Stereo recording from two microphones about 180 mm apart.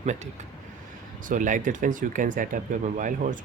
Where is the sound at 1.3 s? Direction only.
45° right (ahead or behind).